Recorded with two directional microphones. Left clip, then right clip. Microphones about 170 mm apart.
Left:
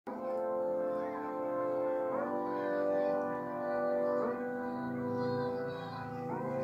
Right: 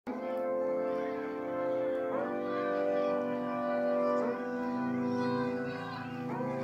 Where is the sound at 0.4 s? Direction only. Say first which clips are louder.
Right 2 dB; 35° right (ahead or behind).